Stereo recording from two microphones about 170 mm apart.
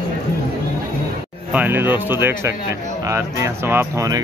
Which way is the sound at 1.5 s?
10° right (ahead or behind).